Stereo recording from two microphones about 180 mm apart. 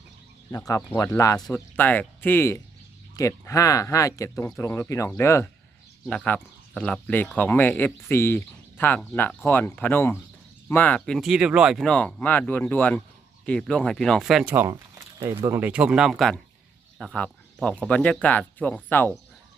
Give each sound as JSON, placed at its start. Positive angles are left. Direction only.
{"t": 0.5, "sound": "speech", "side_deg": 20}